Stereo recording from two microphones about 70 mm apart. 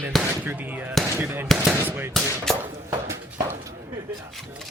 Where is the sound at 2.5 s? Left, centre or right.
Centre.